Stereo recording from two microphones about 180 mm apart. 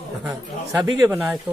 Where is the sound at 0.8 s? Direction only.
15° right (ahead or behind).